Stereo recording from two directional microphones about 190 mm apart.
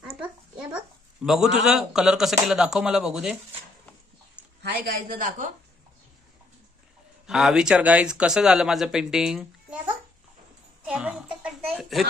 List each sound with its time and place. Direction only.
0.0 s a sound: 5° right (ahead or behind)
1.7 s speech: 5° right (ahead or behind)
4.6 s a woman's voice: 50° right (ahead or behind)
7.2 s speech: centre (ahead or behind)
10.9 s music: 5° right (ahead or behind)
11.7 s a sound: centre (ahead or behind)